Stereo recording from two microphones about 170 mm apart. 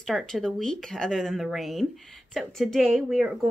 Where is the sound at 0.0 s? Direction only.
Centre (ahead or behind).